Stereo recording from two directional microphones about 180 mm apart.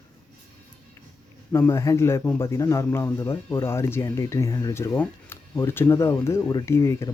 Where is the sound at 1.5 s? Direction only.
15° left (ahead or behind).